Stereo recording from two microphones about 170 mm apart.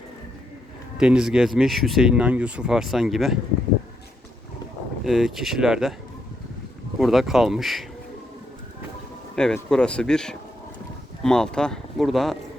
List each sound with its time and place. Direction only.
0.9 s speech: 5° right (ahead or behind)
5.0 s speech: centre (ahead or behind)
7.0 s speech: centre (ahead or behind)
9.3 s speech: 5° left (ahead or behind)